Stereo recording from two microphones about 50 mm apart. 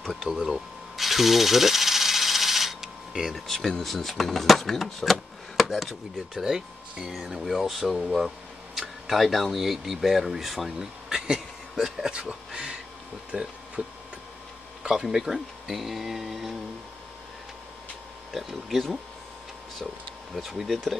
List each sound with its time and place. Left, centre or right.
0.0 s tools: centre
3.5 s speech: centre
18.3 s speech: centre
20.3 s speech: centre